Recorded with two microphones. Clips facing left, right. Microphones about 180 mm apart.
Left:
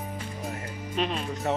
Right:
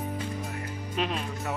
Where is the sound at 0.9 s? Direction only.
5° right (ahead or behind).